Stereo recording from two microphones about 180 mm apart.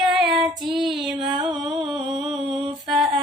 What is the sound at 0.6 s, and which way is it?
Female singing, centre (ahead or behind).